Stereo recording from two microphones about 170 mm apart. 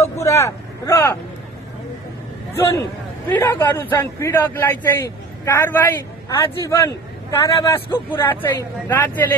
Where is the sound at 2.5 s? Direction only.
15° left (ahead or behind).